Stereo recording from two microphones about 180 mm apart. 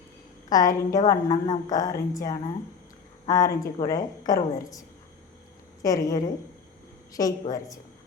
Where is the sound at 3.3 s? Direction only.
20° left (ahead or behind).